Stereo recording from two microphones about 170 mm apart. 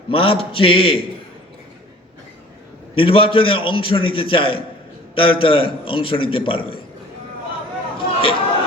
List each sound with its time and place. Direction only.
0.1 s a man's voice: 35° left (ahead or behind)
2.9 s a man's voice: 30° left (ahead or behind)
7.9 s chatter: 30° left (ahead or behind)